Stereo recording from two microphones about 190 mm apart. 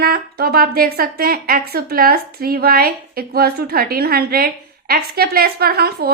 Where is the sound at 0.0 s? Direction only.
55° right (ahead or behind).